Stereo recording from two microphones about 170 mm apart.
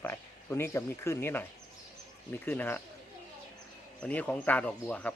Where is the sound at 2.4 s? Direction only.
10° left (ahead or behind).